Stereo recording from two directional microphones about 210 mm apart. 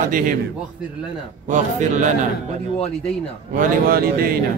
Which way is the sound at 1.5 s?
35° right (ahead or behind).